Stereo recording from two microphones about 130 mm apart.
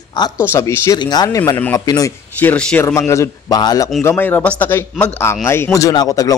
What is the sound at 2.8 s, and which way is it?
Speech, 20° left (ahead or behind).